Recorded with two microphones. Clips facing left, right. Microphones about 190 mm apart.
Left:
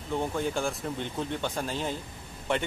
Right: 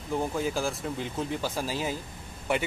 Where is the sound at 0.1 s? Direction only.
5° right (ahead or behind).